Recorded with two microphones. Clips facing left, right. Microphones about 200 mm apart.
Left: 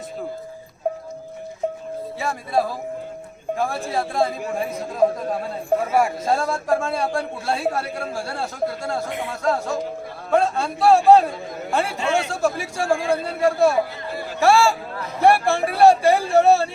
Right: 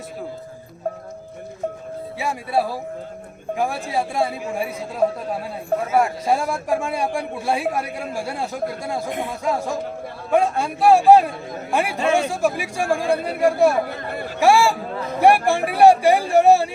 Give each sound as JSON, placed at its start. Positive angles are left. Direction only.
{"t": 2.1, "sound": "a man's voice", "side_deg": -10}
{"t": 6.2, "sound": "a man's voice", "side_deg": -15}
{"t": 13.8, "sound": "speech", "side_deg": -55}
{"t": 14.3, "sound": "a man's voice", "side_deg": -15}